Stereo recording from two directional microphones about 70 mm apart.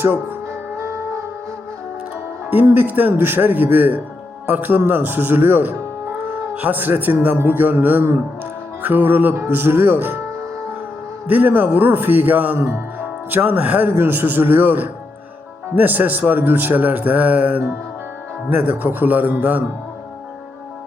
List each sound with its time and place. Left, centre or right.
0.0 s speech: right
0.8 s music: right
2.5 s a man's voice: right
11.3 s a man's voice: right